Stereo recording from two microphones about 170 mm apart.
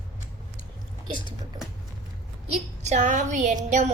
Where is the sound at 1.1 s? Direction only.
30° right (ahead or behind).